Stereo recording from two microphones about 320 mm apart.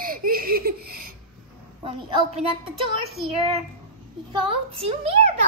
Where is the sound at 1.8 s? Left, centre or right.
Centre.